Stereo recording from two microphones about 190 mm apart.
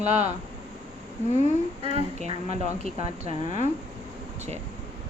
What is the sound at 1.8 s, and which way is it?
Speech, 35° right (ahead or behind).